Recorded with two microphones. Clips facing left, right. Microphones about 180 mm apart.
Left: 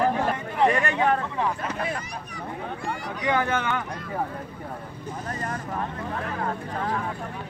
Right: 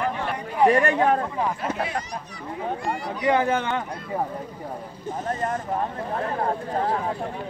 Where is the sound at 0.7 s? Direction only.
40° right (ahead or behind).